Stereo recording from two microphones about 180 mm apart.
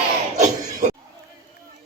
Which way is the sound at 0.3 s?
40° right (ahead or behind).